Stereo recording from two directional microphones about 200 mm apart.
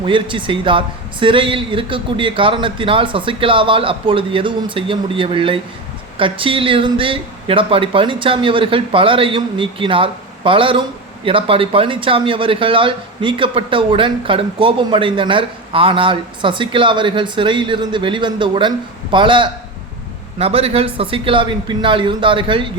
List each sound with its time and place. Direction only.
0.0 s speech: 25° right (ahead or behind)